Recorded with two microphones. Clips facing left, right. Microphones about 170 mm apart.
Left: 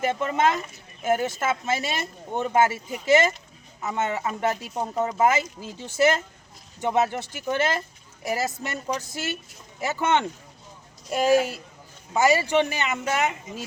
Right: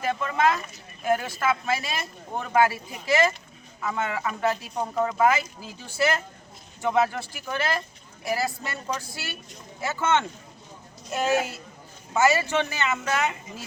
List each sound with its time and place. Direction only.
0.0 s speech: 25° left (ahead or behind)